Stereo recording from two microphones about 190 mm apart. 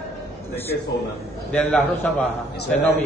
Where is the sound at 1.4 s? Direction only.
10° left (ahead or behind).